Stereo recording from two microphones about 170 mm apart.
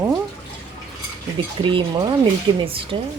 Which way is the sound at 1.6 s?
30° right (ahead or behind).